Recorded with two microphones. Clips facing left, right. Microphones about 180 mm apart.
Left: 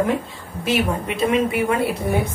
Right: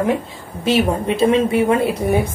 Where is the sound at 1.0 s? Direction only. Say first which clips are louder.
Right 4 dB; 30° right (ahead or behind).